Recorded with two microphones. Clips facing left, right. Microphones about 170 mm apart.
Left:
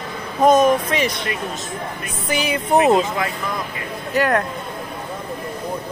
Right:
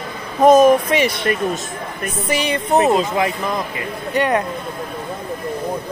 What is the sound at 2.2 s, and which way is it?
Speech, centre (ahead or behind).